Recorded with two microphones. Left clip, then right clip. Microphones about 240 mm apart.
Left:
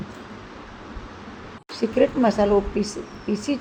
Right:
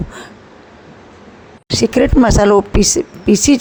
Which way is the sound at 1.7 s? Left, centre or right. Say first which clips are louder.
Right 7 dB; right.